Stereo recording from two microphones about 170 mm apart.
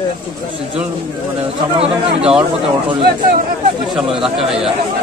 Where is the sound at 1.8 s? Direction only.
35° right (ahead or behind).